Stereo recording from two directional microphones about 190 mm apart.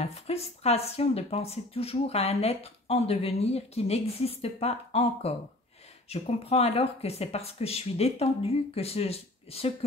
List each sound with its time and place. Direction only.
0.0 s speech: 35° left (ahead or behind)